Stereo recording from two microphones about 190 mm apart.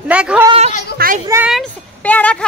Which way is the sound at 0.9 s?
50° right (ahead or behind).